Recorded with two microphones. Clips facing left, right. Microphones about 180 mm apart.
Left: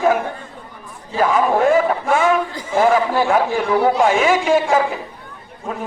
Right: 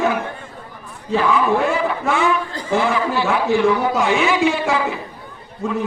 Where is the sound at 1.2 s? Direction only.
45° left (ahead or behind).